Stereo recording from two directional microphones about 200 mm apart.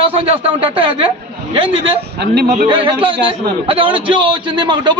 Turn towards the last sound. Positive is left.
turn(degrees=-20)  # may be behind; listen again after turning